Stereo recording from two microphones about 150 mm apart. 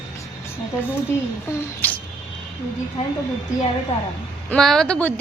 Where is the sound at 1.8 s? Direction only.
10° left (ahead or behind).